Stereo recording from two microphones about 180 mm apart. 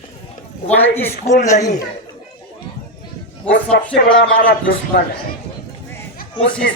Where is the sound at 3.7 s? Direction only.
65° left (ahead or behind).